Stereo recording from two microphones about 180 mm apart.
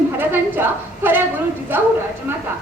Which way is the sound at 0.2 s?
10° right (ahead or behind).